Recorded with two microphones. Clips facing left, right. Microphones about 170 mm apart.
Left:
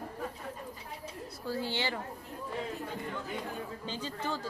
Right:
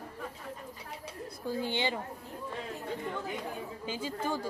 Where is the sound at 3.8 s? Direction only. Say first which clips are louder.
Right 5 dB; 10° right (ahead or behind).